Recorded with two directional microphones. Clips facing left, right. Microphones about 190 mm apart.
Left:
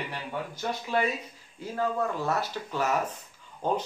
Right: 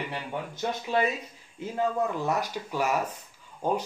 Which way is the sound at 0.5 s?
20° right (ahead or behind).